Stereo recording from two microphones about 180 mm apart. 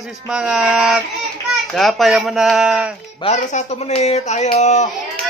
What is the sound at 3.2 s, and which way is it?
Speech, 40° left (ahead or behind).